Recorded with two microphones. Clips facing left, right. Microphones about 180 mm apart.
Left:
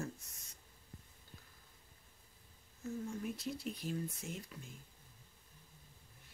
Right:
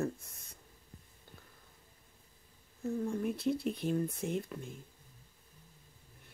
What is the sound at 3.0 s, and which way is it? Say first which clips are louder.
Speech: right 9 dB; 55° right (ahead or behind).